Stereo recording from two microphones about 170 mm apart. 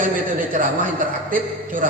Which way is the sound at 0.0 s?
50° right (ahead or behind).